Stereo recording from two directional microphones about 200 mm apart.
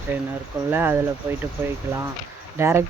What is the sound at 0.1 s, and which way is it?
Speech, 10° right (ahead or behind).